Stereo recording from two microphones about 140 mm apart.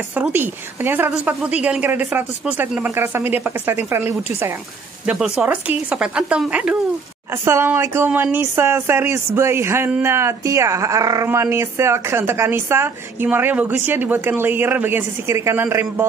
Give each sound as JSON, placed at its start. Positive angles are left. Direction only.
{"t": 0.1, "sound": "speech", "side_deg": -15}
{"t": 5.0, "sound": "speech", "side_deg": -5}
{"t": 7.4, "sound": "speech", "side_deg": -20}